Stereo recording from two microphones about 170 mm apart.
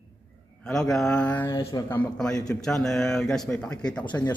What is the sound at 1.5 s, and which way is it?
Speech, 25° left (ahead or behind).